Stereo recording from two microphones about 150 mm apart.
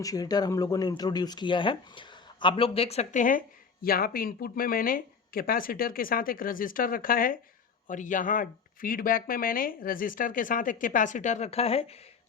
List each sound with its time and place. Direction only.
0.0 s speech: 25° left (ahead or behind); by 3.4 s 60° left (ahead or behind)
3.8 s speech: 80° left
7.9 s speech: 60° left (ahead or behind); by 11.9 s 40° left (ahead or behind)